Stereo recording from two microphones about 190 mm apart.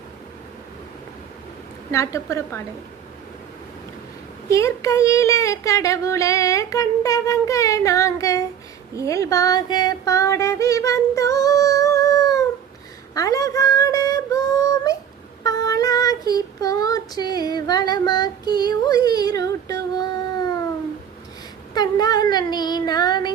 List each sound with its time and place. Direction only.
1.9 s speech: 15° left (ahead or behind)
4.4 s speech: 15° left (ahead or behind)
9.0 s a sound: 15° left (ahead or behind)
13.1 s female singing: 20° left (ahead or behind)
15.4 s child singing: 20° left (ahead or behind)
21.8 s a sound: 20° left (ahead or behind)